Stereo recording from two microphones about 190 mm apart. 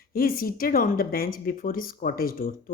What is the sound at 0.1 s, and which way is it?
Speech, 50° left (ahead or behind).